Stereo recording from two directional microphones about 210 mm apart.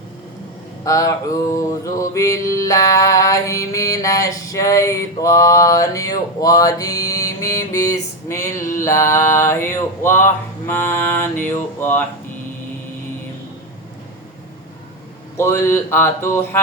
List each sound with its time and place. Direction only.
0.9 s mantra: 15° left (ahead or behind)
15.4 s mantra: 15° left (ahead or behind)